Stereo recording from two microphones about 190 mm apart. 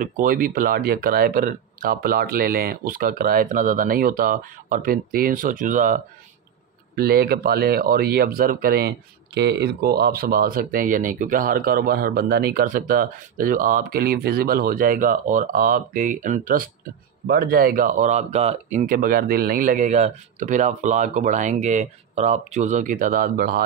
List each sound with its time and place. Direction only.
0.0 s speech: 45° right (ahead or behind)
7.0 s speech: 55° right (ahead or behind)